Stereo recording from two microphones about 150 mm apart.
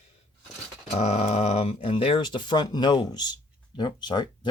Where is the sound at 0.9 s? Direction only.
45° left (ahead or behind).